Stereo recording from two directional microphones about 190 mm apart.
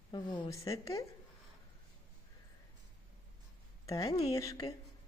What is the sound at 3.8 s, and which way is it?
Speech, 20° left (ahead or behind).